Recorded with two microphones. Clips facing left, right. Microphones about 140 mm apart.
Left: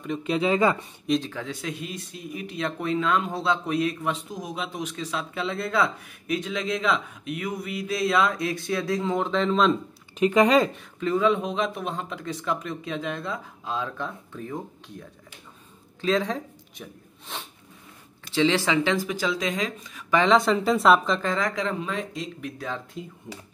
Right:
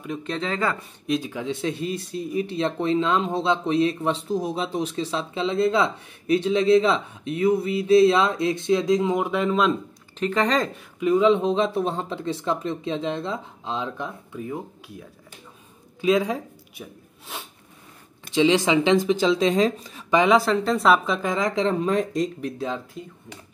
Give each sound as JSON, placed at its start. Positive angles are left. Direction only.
{"t": 0.0, "sound": "speech", "side_deg": 0}
{"t": 1.0, "sound": "speech", "side_deg": -5}
{"t": 1.3, "sound": "speech", "side_deg": -20}
{"t": 10.1, "sound": "speech", "side_deg": 10}
{"t": 11.0, "sound": "speech", "side_deg": -15}
{"t": 18.3, "sound": "speech", "side_deg": -15}
{"t": 20.1, "sound": "speech", "side_deg": -15}
{"t": 20.3, "sound": "speech", "side_deg": 0}
{"t": 21.6, "sound": "speech", "side_deg": -40}
{"t": 23.0, "sound": "speech", "side_deg": 0}